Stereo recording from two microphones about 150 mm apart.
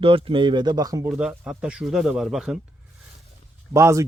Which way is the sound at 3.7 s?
20° right (ahead or behind).